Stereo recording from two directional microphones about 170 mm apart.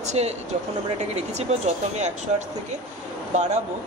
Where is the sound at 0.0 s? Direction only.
40° right (ahead or behind).